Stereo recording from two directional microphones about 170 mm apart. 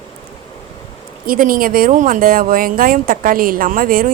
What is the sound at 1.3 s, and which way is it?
A woman's voice, 55° right (ahead or behind).